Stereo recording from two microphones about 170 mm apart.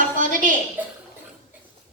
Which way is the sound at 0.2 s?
50° right (ahead or behind).